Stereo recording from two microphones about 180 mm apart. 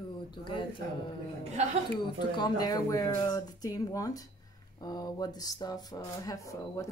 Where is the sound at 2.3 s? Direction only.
25° left (ahead or behind).